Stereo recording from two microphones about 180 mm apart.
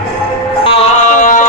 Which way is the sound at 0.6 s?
30° left (ahead or behind).